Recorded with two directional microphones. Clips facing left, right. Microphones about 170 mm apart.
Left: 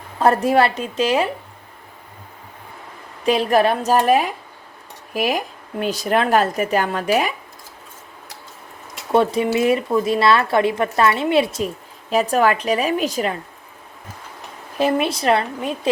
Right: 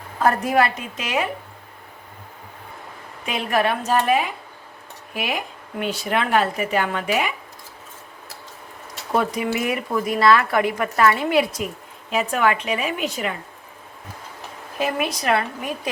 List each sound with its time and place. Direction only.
0.2 s speech: 30° left (ahead or behind)
3.2 s speech: 35° left (ahead or behind)
9.1 s speech: 30° left (ahead or behind)
12.1 s speech: 40° left (ahead or behind)
14.8 s speech: 30° left (ahead or behind)